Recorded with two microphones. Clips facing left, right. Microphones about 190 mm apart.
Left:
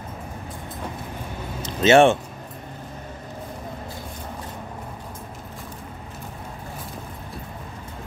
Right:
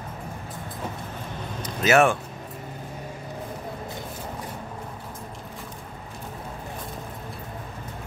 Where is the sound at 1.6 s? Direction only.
25° left (ahead or behind).